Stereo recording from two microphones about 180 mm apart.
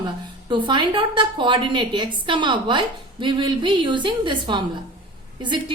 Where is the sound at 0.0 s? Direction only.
25° right (ahead or behind).